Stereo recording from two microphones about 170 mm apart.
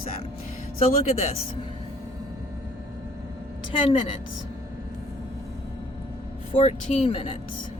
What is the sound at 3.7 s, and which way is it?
Speech, 30° left (ahead or behind).